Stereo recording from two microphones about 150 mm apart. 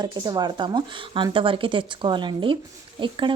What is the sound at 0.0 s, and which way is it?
Speech, 30° right (ahead or behind).